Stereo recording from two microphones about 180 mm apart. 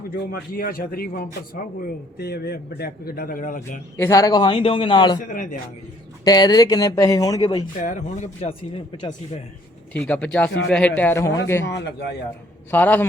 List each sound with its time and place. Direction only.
0.5 s a man's voice: 55° left (ahead or behind)
3.9 s speech: 15° left (ahead or behind)
5.3 s a man's voice: 45° left (ahead or behind)
6.2 s speech: 20° left (ahead or behind)
7.8 s a man's voice: 45° left (ahead or behind); by 9.1 s 30° left (ahead or behind)
10.0 s a man's voice: 5° left (ahead or behind)
11.6 s a man's voice: 70° left (ahead or behind)
12.7 s a man's voice: 10° left (ahead or behind)